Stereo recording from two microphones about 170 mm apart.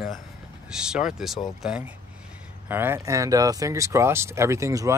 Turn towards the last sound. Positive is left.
turn(degrees=-20)  # may be behind; listen again after turning